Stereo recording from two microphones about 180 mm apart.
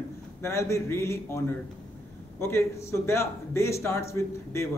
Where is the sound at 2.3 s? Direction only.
15° left (ahead or behind).